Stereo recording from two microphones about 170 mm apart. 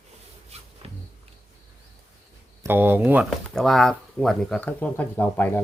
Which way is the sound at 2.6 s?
10° right (ahead or behind).